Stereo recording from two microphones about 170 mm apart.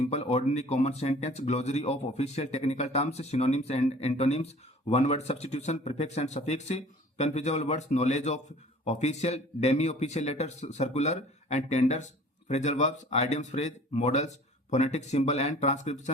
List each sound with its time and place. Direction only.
0.0 s speech: 40° left (ahead or behind)